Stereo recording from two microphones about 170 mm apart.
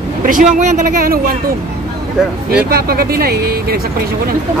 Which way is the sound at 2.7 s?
65° right (ahead or behind).